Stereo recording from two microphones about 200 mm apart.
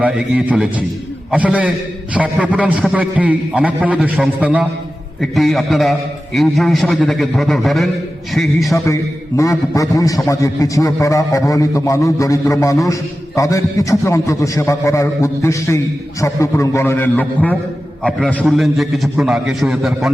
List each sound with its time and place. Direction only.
0.0 s a man's voice: 5° right (ahead or behind)
8.7 s a man's voice: 15° left (ahead or behind); by 20.1 s centre (ahead or behind)